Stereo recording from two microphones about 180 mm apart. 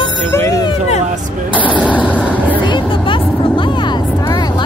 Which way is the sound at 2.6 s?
25° left (ahead or behind).